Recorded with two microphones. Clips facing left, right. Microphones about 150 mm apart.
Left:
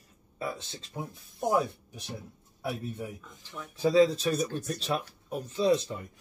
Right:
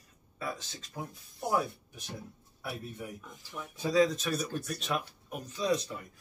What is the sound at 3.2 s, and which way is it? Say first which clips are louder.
Speech: even; 10° right (ahead or behind).